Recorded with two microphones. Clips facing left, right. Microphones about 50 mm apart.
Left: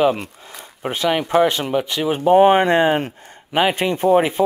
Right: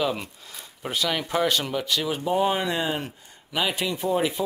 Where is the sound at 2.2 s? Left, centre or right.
Left.